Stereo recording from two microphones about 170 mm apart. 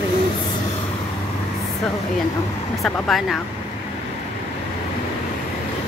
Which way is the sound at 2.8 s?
Centre (ahead or behind).